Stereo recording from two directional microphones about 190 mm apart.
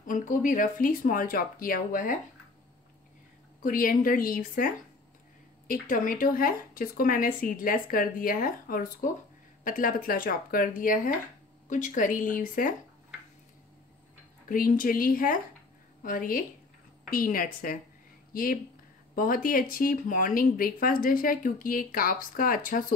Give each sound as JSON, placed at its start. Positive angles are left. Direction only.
{"t": 0.0, "sound": "speech", "side_deg": 45}
{"t": 3.6, "sound": "speech", "side_deg": 45}
{"t": 14.5, "sound": "speech", "side_deg": 45}